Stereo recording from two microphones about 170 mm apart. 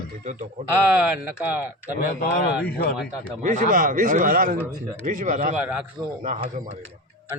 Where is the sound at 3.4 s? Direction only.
50° right (ahead or behind).